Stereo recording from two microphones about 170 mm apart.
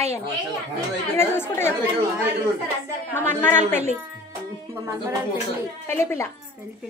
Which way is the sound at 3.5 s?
40° right (ahead or behind).